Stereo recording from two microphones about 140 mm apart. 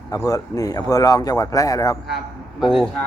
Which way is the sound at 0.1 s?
25° left (ahead or behind).